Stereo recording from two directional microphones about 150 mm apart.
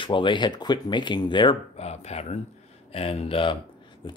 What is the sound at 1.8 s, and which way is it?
Speech, 45° left (ahead or behind).